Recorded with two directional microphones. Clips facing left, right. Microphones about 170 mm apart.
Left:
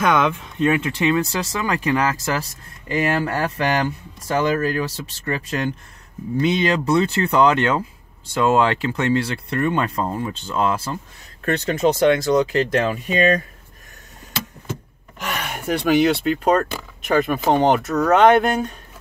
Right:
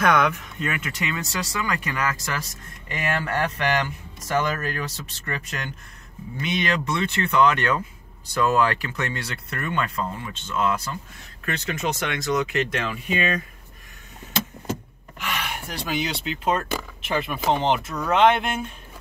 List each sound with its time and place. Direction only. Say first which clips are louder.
0.0 s speech: left 2 dB; 25° left (ahead or behind)
15.1 s speech: left 3 dB; 45° left (ahead or behind)